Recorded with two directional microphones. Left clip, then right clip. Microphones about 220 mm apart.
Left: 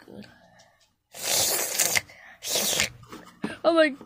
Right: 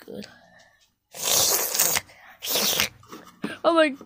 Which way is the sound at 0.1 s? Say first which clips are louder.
Right 7 dB; 30° right (ahead or behind).